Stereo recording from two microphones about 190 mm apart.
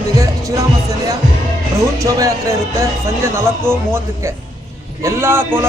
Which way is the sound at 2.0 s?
15° right (ahead or behind).